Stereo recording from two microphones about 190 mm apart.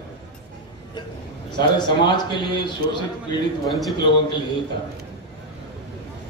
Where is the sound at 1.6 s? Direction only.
25° left (ahead or behind).